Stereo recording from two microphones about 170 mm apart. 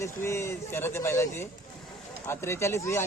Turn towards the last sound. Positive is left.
turn(degrees=15)  # may be behind; listen again after turning